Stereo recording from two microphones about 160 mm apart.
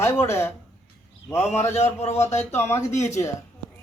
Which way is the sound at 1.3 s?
45° left (ahead or behind).